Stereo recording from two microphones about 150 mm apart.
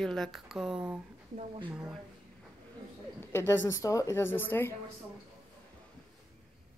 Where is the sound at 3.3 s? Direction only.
15° left (ahead or behind).